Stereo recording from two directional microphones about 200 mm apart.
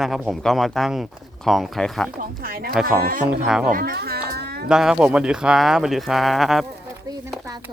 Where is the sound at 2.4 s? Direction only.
45° right (ahead or behind).